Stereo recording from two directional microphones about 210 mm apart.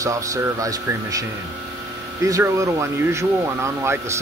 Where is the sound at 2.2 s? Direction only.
15° right (ahead or behind).